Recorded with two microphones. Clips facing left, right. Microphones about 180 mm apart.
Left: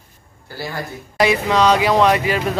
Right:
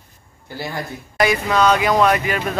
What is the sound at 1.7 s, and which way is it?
Speech, 30° left (ahead or behind).